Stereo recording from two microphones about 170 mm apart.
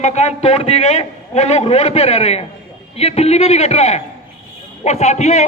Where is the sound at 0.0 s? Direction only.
40° left (ahead or behind).